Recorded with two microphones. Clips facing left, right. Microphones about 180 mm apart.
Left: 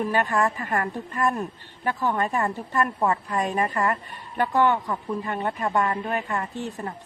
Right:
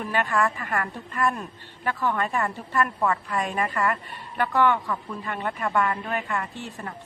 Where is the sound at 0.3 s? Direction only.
20° left (ahead or behind).